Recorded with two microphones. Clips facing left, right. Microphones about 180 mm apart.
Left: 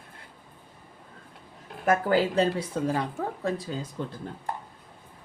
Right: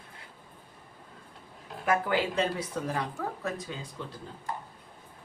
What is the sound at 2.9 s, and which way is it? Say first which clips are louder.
Speech: left 4 dB; 30° left (ahead or behind).